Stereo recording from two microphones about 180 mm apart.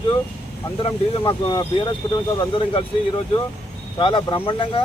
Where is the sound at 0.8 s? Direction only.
25° left (ahead or behind).